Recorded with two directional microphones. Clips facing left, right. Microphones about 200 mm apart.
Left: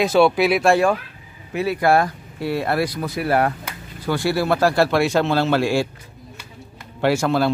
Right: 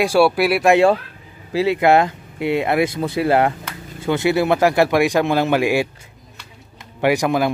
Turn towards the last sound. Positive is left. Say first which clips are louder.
# right 1 dB
turn(degrees=-15)  # may be behind; listen again after turning